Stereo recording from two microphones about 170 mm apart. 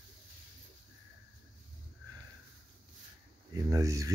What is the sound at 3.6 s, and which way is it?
Speech, 20° right (ahead or behind).